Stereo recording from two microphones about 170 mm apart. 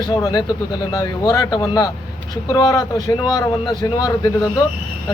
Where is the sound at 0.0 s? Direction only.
20° left (ahead or behind).